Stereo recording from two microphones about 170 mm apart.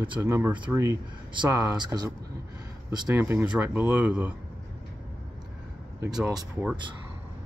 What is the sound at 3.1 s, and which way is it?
Speech, 10° right (ahead or behind).